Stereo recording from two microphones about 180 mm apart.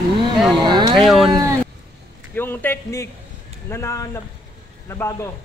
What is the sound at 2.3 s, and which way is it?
A woman's voice, 10° left (ahead or behind).